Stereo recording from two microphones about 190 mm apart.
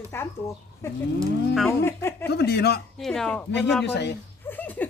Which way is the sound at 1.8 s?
15° left (ahead or behind).